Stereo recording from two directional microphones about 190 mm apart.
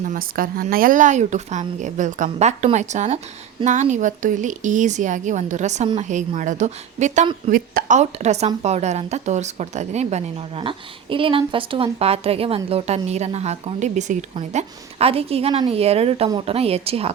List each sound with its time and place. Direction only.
0.0 s speech: 45° right (ahead or behind)